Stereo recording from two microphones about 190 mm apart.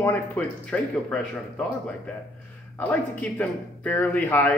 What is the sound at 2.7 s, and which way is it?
Speech, 5° left (ahead or behind).